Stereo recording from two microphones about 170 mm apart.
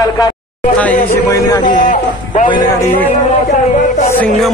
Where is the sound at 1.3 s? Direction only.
20° left (ahead or behind).